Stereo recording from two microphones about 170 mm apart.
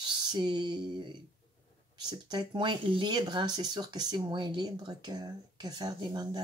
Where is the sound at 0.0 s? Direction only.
25° right (ahead or behind).